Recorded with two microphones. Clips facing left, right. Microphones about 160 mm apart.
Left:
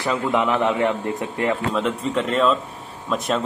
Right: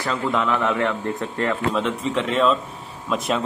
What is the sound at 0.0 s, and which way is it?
Speech, 15° left (ahead or behind).